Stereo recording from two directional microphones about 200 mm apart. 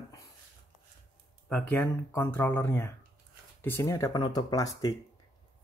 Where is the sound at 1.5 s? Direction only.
5° left (ahead or behind).